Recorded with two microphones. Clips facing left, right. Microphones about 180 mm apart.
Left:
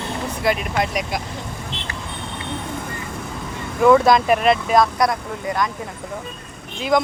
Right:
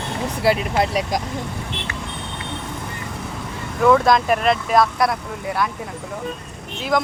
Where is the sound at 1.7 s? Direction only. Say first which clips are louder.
Right 2 dB; 60° right (ahead or behind).